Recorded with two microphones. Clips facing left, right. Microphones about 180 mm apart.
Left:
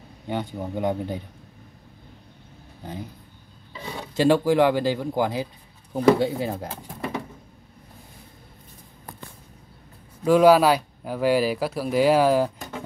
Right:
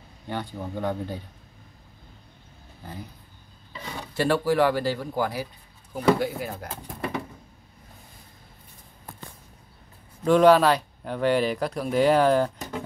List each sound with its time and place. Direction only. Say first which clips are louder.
0.3 s speech: left 3 dB; 15° left (ahead or behind)
3.8 s speech: left 5 dB; 15° left (ahead or behind)
10.2 s speech: left 1 dB; 5° left (ahead or behind)